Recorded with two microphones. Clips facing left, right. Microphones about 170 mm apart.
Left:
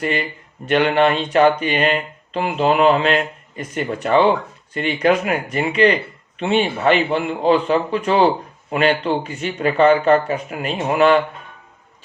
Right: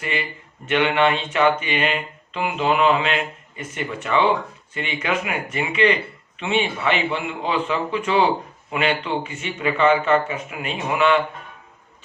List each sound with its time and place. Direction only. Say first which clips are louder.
0.0 s speech: left 5 dB; 45° left (ahead or behind)